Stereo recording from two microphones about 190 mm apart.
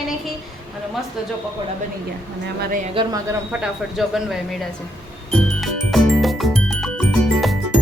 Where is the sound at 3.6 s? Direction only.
Centre (ahead or behind).